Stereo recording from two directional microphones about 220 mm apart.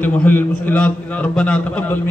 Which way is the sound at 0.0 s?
10° left (ahead or behind).